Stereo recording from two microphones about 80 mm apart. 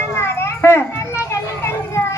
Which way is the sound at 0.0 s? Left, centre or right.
Left.